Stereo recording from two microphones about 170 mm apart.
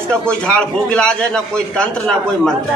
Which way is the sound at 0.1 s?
5° left (ahead or behind).